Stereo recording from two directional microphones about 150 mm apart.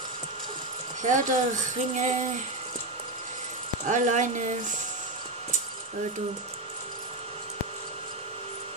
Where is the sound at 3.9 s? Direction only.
55° right (ahead or behind).